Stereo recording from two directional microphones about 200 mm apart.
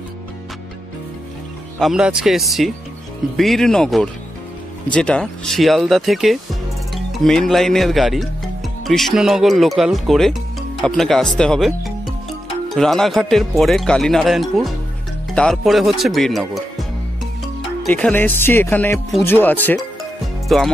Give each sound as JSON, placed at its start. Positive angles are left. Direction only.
{"t": 1.8, "sound": "speech", "side_deg": -5}
{"t": 17.8, "sound": "speech", "side_deg": 5}